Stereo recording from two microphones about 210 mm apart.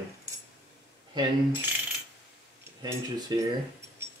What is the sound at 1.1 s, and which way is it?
Coin, 20° right (ahead or behind).